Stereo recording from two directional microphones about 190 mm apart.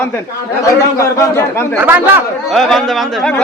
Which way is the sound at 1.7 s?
10° right (ahead or behind).